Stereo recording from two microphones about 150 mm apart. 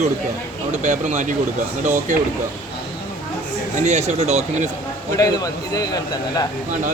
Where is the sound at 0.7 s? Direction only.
55° right (ahead or behind).